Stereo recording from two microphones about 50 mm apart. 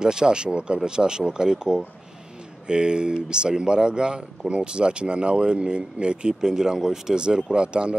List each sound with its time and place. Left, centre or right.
0.0 s speech: centre